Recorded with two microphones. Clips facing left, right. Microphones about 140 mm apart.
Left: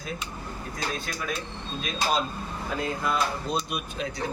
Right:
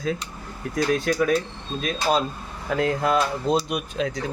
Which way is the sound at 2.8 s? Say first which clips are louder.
Right 7 dB; 90° right.